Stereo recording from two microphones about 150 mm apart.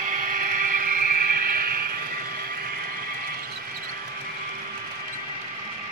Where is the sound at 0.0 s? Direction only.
60° right (ahead or behind).